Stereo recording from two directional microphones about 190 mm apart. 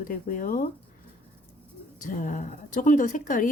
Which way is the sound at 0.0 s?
45° left (ahead or behind).